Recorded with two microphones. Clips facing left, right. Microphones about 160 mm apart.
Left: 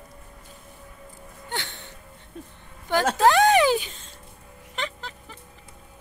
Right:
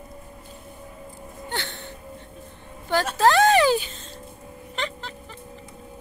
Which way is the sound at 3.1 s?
15° left (ahead or behind).